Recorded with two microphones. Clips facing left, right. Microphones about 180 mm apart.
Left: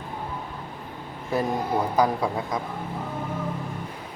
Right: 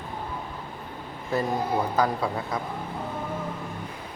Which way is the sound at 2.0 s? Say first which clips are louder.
Left 2 dB; 15° left (ahead or behind).